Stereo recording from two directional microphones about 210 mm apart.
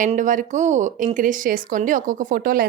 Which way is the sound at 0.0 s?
35° right (ahead or behind).